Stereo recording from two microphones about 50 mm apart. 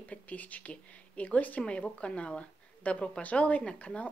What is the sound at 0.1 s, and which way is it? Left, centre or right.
A woman's voice, left.